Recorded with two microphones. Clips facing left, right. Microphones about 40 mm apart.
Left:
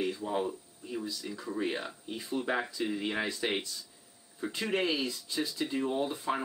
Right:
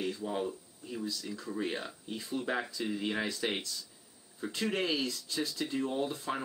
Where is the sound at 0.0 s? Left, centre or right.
Centre.